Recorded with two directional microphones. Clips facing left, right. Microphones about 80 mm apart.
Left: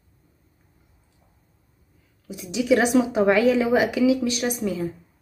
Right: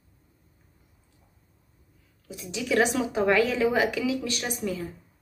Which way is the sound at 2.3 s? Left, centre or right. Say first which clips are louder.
Left 8 dB; centre.